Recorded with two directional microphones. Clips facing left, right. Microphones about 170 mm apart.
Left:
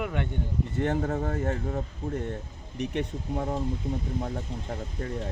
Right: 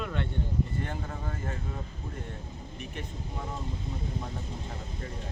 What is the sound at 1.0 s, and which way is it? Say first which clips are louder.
Speech: left 10 dB; 50° left (ahead or behind).